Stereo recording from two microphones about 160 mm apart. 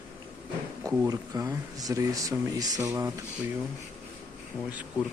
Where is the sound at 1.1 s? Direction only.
20° right (ahead or behind).